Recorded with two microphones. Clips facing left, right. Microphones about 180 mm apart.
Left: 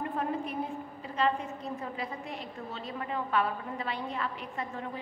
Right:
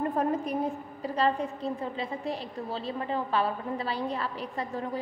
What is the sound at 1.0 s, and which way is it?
A woman's voice, 35° right (ahead or behind).